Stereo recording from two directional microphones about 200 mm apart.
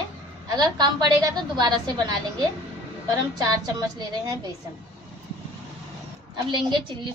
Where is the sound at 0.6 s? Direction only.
20° right (ahead or behind).